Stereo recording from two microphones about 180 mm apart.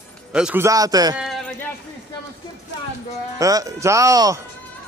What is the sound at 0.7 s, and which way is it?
Speech, 20° right (ahead or behind).